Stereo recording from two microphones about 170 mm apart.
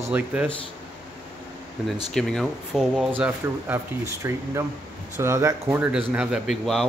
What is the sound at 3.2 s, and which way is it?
Speech, 15° right (ahead or behind).